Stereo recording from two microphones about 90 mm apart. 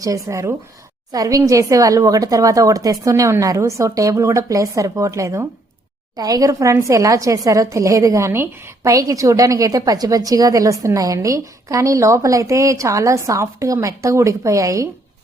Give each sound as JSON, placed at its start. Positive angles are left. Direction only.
{"t": 0.0, "sound": "a woman's voice", "side_deg": -35}